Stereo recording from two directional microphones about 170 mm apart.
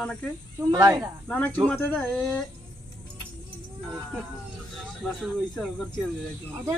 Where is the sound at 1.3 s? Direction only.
5° left (ahead or behind).